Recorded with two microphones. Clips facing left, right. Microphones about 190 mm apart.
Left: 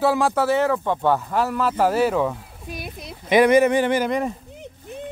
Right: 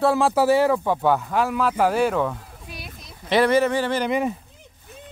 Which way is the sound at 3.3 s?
15° left (ahead or behind).